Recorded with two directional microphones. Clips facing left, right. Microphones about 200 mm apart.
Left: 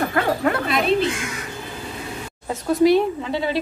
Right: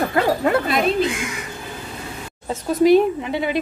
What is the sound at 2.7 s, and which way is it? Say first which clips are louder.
Speech: right 2 dB; 20° right (ahead or behind).